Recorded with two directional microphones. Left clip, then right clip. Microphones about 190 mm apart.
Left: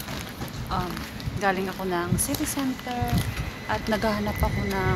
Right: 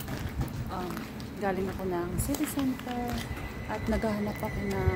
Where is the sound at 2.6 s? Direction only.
15° left (ahead or behind).